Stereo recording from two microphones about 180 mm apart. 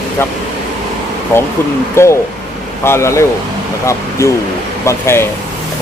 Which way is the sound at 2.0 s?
15° left (ahead or behind).